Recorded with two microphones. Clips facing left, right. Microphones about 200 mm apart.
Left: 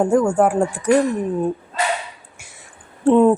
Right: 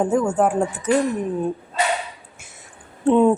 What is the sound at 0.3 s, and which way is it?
Speech, 10° left (ahead or behind).